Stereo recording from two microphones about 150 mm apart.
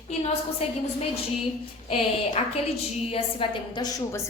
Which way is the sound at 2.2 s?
45° left (ahead or behind).